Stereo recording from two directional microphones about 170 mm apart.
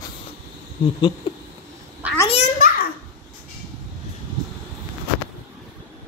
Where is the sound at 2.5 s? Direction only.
55° left (ahead or behind).